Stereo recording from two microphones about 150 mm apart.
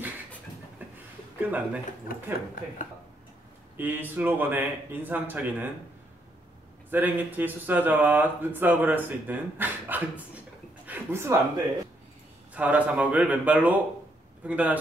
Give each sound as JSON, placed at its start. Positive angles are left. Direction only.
{"t": 0.8, "sound": "a sound", "side_deg": -10}
{"t": 1.4, "sound": "speech", "side_deg": -10}
{"t": 3.7, "sound": "speech", "side_deg": -15}
{"t": 6.9, "sound": "speech", "side_deg": -10}